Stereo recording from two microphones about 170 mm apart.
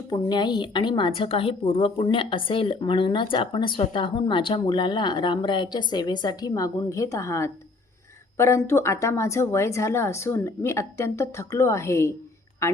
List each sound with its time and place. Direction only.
0.1 s a woman's voice: 25° left (ahead or behind)